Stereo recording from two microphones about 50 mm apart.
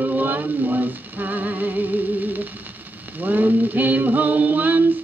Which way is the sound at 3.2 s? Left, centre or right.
Right.